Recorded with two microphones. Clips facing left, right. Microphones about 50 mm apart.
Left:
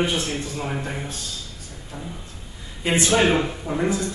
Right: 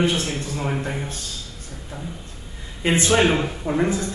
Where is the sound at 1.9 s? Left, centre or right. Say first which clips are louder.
Right 1 dB; centre.